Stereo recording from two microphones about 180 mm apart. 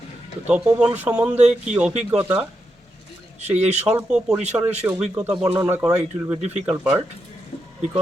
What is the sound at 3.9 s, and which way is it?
Speech, 5° right (ahead or behind).